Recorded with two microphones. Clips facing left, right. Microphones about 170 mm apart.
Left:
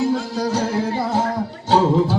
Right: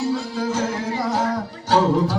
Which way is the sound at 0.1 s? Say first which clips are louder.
Left 2 dB; 45° left (ahead or behind).